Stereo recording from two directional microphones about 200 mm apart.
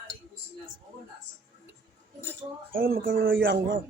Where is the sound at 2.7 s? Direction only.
45° right (ahead or behind).